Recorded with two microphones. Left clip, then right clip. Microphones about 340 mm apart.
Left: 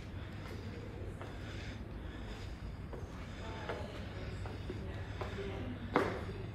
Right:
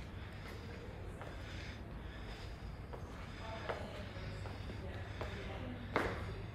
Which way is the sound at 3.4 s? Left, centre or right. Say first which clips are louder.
Even; centre.